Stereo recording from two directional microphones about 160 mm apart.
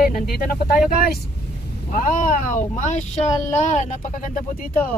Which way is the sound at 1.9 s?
50° left (ahead or behind).